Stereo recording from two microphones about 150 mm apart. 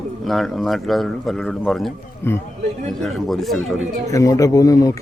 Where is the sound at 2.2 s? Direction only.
15° left (ahead or behind).